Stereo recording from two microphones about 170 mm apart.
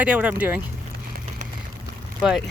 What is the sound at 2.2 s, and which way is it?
Speech, 5° right (ahead or behind).